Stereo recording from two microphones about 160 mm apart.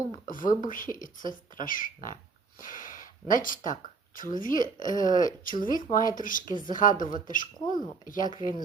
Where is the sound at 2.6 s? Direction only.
55° left (ahead or behind).